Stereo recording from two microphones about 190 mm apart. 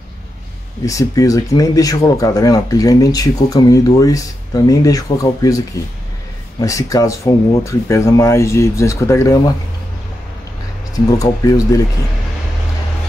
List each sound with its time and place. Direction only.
0.8 s speech: 15° left (ahead or behind)
6.6 s speech: 15° left (ahead or behind)
11.1 s speech: 15° left (ahead or behind)